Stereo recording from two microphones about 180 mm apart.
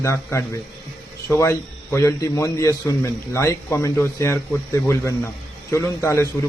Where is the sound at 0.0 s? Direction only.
15° left (ahead or behind).